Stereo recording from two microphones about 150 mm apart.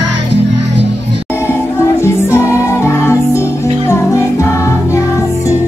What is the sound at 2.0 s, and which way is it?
Music, 20° left (ahead or behind).